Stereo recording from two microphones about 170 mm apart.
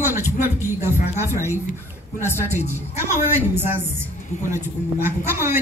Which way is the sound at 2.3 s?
15° right (ahead or behind).